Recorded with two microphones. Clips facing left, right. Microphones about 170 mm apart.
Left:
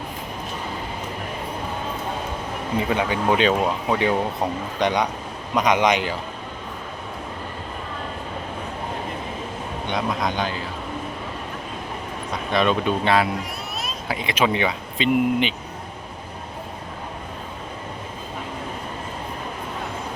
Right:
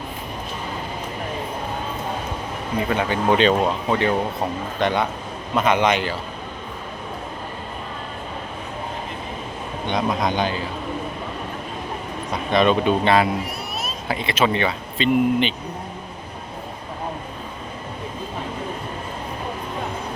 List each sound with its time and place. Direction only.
2.9 s speech: 10° left (ahead or behind)
9.9 s speech: centre (ahead or behind)
12.5 s speech: centre (ahead or behind)
14.1 s speech: 15° left (ahead or behind)